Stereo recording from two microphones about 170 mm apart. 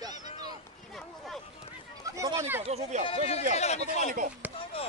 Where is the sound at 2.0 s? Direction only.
20° right (ahead or behind).